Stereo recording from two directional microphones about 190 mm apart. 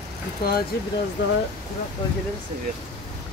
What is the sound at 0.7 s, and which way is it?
Speech, 60° left (ahead or behind).